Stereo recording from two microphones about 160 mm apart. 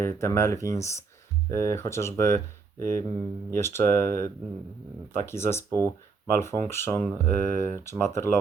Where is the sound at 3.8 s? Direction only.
60° right (ahead or behind).